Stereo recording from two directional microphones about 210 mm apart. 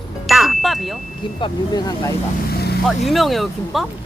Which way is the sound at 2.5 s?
50° left (ahead or behind).